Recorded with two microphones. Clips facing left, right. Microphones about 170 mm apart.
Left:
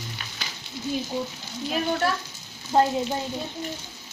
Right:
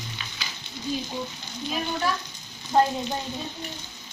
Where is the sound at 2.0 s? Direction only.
70° left (ahead or behind).